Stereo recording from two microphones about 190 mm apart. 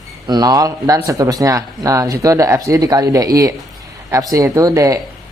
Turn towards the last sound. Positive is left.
turn(degrees=-15)  # may be behind; listen again after turning